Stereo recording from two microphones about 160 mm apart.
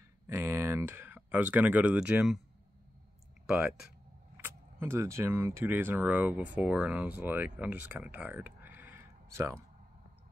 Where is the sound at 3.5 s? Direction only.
5° right (ahead or behind).